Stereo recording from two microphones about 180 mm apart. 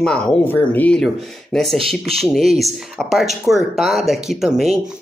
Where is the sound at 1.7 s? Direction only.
30° right (ahead or behind).